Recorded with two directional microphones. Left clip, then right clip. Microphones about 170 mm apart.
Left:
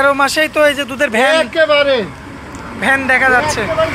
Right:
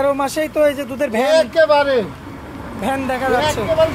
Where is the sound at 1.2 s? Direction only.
25° left (ahead or behind).